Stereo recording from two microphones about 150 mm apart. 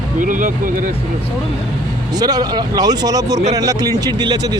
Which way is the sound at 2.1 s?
25° right (ahead or behind).